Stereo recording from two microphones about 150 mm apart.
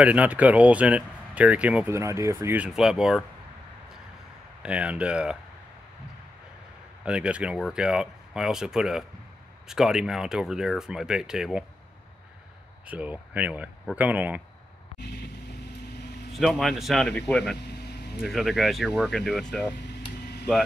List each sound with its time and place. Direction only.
0.0 s speech: 10° right (ahead or behind)
4.6 s speech: 10° right (ahead or behind)
7.1 s speech: 10° right (ahead or behind)
12.8 s speech: 10° right (ahead or behind)
16.3 s speech: centre (ahead or behind)
17.6 s vehicle: 90° left
18.2 s speech: centre (ahead or behind)
20.0 s a sound: 90° left